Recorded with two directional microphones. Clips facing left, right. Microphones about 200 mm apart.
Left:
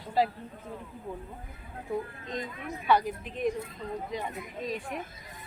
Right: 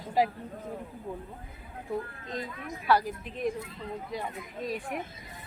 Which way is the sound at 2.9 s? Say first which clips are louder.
Even; 5° right (ahead or behind).